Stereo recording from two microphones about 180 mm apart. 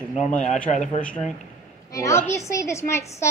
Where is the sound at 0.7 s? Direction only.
40° left (ahead or behind).